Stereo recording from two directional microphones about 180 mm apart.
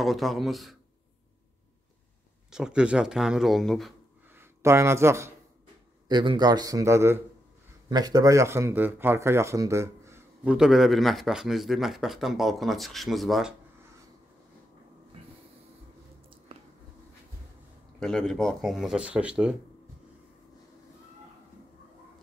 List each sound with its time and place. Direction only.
0.0 s speech: centre (ahead or behind)
2.5 s speech: 5° right (ahead or behind)
4.4 s speech: 15° right (ahead or behind)
6.0 s a man's voice: 25° right (ahead or behind); by 13.5 s centre (ahead or behind)
18.0 s speech: 5° left (ahead or behind)